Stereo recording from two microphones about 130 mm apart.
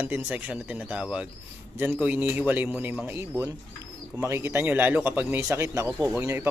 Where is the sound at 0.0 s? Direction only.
15° right (ahead or behind).